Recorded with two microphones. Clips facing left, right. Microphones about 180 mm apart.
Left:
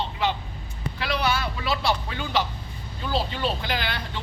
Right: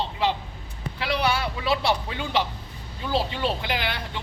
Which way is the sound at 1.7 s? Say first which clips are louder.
Right 2 dB; 25° right (ahead or behind).